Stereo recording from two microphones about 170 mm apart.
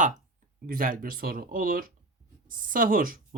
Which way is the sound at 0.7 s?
55° right (ahead or behind).